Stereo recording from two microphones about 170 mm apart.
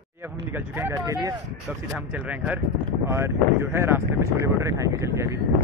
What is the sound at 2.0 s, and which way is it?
Speech, 10° right (ahead or behind).